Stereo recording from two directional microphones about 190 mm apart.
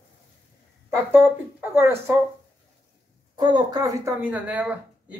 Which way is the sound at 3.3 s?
25° right (ahead or behind).